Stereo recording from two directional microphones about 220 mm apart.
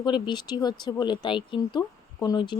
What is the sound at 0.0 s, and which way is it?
Speech, 20° left (ahead or behind).